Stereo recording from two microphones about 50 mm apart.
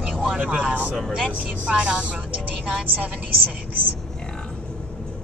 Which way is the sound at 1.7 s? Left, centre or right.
Centre.